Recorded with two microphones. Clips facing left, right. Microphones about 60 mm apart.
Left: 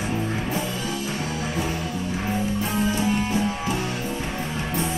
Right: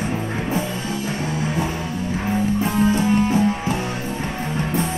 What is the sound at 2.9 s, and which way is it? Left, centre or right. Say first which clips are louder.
Music: right 5 dB; right.